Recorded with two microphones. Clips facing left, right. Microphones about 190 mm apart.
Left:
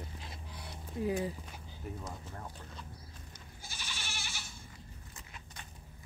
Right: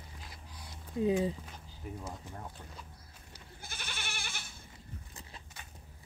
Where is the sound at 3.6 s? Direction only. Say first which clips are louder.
Right 2 dB; 55° right (ahead or behind).